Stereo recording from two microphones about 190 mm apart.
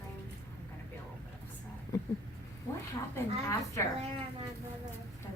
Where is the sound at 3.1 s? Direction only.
15° left (ahead or behind).